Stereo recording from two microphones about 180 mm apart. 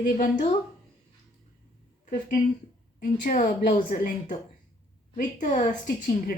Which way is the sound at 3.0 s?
45° left (ahead or behind).